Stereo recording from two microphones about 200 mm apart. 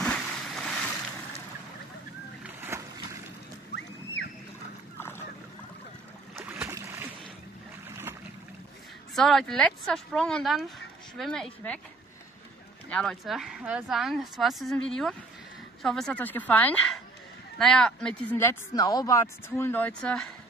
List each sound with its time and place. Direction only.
0.0 s vehicle: 5° left (ahead or behind)
2.4 s boat: 10° right (ahead or behind)
3.7 s a sound: 60° left (ahead or behind)
6.4 s boat: 10° right (ahead or behind)
9.1 s speech: centre (ahead or behind)
12.9 s speech: 5° left (ahead or behind)